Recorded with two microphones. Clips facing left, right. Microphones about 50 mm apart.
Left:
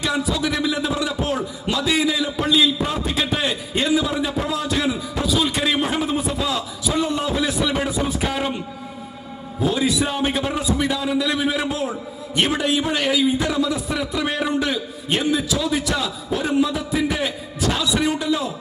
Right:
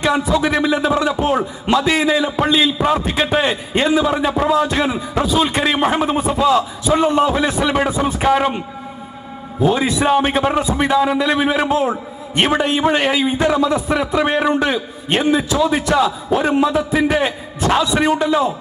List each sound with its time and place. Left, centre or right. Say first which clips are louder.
0.0 s a man's voice: right 6 dB; right